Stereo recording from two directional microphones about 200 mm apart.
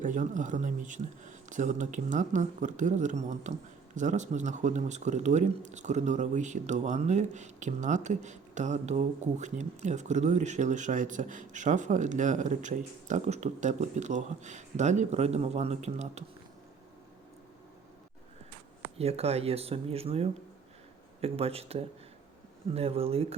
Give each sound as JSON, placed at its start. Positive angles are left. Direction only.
{"t": 0.0, "sound": "speech", "side_deg": -40}
{"t": 18.9, "sound": "speech", "side_deg": -30}